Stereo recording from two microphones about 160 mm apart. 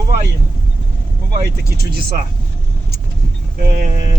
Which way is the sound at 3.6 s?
60° right (ahead or behind).